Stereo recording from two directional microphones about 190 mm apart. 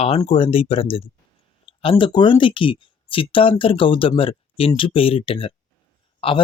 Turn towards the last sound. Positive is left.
turn(degrees=30)  # may be behind; listen again after turning